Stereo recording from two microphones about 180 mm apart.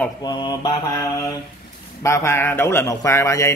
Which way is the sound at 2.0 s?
15° left (ahead or behind).